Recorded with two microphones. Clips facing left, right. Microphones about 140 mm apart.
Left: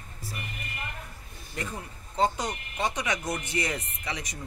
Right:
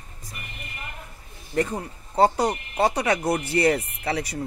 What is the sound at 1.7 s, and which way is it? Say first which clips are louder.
Speech: right 8 dB; 35° right (ahead or behind).